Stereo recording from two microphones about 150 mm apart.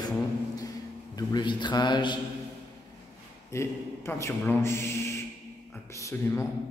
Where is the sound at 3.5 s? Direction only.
20° left (ahead or behind).